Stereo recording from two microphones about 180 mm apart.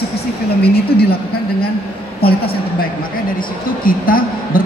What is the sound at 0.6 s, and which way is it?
Speech, 60° left (ahead or behind).